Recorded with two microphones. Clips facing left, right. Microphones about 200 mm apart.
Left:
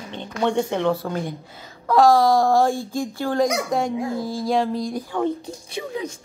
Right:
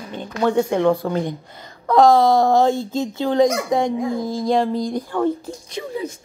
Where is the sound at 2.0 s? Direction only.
20° right (ahead or behind).